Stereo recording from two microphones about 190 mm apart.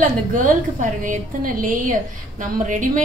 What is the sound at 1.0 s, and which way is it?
A woman's voice, 45° right (ahead or behind).